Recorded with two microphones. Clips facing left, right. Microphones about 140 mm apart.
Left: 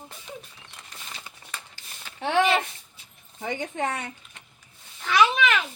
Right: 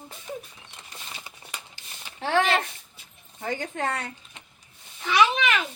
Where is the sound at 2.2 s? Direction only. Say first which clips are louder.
Left 1 dB; 20° left (ahead or behind).